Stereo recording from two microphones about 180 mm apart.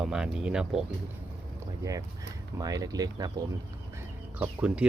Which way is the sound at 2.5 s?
20° right (ahead or behind).